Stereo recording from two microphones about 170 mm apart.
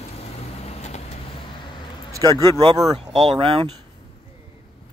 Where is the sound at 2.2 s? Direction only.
20° left (ahead or behind).